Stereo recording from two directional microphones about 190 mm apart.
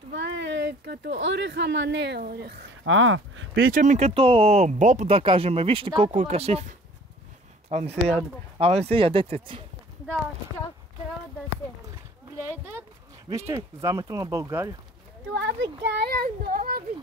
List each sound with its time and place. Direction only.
0.1 s speech: 70° right (ahead or behind)
2.8 s speech: 90° right
3.6 s speech: 45° right (ahead or behind)
7.7 s speech: 35° right (ahead or behind)
13.5 s speech: 15° right (ahead or behind)
15.3 s speech: 70° right (ahead or behind); by 16.8 s 50° right (ahead or behind)